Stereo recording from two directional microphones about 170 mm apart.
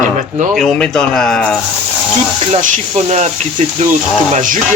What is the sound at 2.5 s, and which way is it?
Speech, 45° right (ahead or behind).